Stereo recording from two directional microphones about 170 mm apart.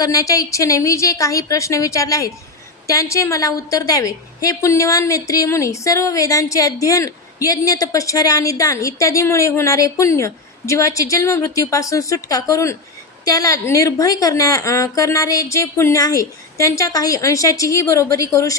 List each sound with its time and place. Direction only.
0.0 s a woman's voice: 20° left (ahead or behind)